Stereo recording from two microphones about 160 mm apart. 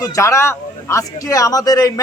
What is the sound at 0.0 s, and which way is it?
A man's voice, 20° left (ahead or behind).